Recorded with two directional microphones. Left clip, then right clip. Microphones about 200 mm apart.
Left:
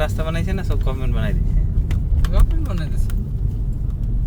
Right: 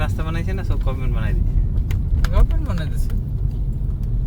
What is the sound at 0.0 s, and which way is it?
Vehicle, 35° left (ahead or behind).